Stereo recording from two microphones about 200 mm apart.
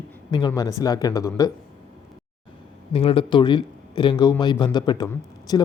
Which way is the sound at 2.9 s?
25° left (ahead or behind).